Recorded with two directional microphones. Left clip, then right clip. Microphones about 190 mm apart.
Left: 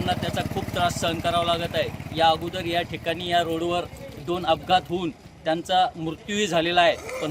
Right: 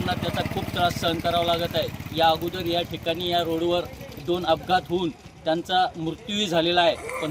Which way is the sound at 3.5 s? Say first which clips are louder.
Right 1 dB; centre (ahead or behind).